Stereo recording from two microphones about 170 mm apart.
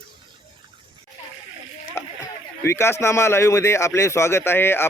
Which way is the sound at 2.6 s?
15° left (ahead or behind).